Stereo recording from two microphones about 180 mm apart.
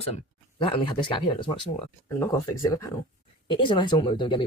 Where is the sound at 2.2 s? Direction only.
15° left (ahead or behind).